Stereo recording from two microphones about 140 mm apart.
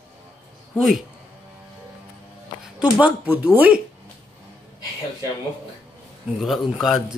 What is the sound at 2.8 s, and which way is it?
Speech, 10° right (ahead or behind).